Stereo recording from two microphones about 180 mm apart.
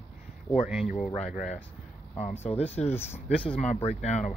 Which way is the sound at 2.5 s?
35° left (ahead or behind).